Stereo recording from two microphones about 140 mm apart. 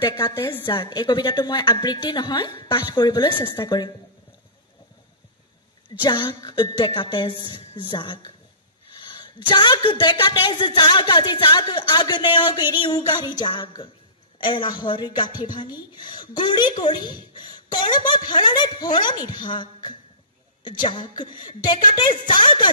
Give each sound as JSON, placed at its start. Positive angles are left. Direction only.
{"t": 0.1, "sound": "a woman's voice", "side_deg": 30}
{"t": 6.0, "sound": "speech", "side_deg": 35}